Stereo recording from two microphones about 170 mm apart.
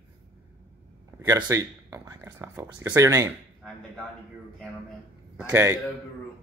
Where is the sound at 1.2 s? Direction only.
15° right (ahead or behind).